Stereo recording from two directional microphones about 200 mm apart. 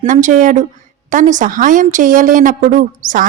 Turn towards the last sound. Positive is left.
turn(degrees=-40)  # may be behind; listen again after turning